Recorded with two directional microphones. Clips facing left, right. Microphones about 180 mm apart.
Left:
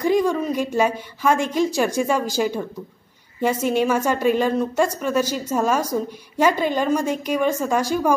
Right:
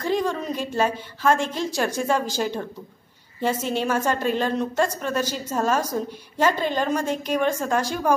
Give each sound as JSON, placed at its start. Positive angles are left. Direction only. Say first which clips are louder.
{"t": 0.0, "sound": "a woman's voice", "louder": "left 5 dB", "side_deg": 10}